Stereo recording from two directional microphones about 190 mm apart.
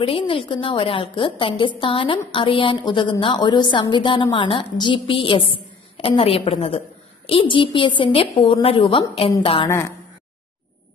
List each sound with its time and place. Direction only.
0.0 s a woman's voice: 30° left (ahead or behind)
9.7 s speech: 15° left (ahead or behind)